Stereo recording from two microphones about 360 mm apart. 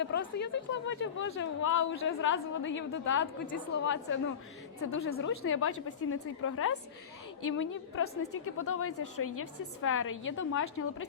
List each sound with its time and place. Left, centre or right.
0.0 s a woman's voice: left
8.5 s speech: left
8.8 s a woman's voice: left